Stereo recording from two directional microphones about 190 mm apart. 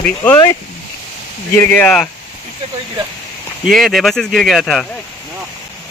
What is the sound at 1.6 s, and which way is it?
Speech, 10° left (ahead or behind).